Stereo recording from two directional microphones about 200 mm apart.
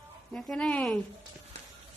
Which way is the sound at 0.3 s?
5° left (ahead or behind).